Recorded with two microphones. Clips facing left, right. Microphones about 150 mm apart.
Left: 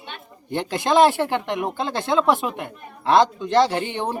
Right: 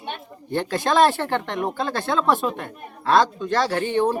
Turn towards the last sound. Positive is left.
turn(degrees=15)  # may be behind; listen again after turning